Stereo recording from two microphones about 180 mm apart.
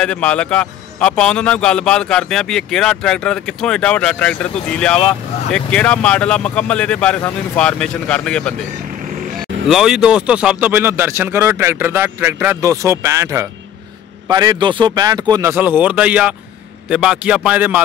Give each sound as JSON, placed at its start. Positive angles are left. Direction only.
{"t": 0.0, "sound": "a man's voice", "side_deg": 5}
{"t": 9.7, "sound": "speech", "side_deg": 0}
{"t": 15.5, "sound": "speech", "side_deg": -10}